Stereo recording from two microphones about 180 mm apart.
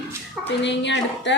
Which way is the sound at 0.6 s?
80° left.